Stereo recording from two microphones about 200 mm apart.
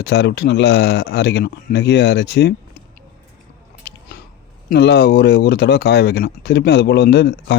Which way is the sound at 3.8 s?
55° left (ahead or behind).